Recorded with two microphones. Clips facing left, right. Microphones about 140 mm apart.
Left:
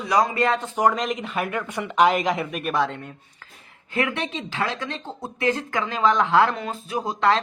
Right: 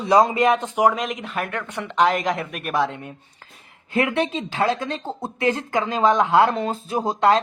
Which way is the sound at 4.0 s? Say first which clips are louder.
Right 4 dB; 25° right (ahead or behind).